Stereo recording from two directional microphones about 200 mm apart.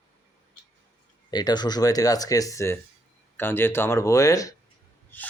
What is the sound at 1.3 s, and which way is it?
Speech, 20° left (ahead or behind).